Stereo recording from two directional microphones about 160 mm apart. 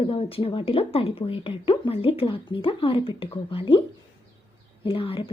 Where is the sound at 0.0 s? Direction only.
35° left (ahead or behind).